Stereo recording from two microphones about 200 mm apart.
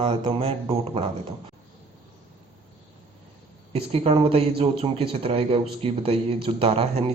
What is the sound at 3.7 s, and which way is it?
A man's voice, 30° right (ahead or behind).